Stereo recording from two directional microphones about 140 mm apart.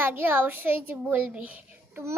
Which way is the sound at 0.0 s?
15° right (ahead or behind).